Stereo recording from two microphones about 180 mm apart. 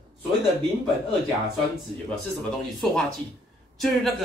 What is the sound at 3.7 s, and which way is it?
Speech, centre (ahead or behind).